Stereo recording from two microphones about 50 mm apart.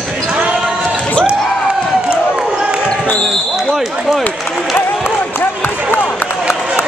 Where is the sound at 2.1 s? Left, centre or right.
Centre.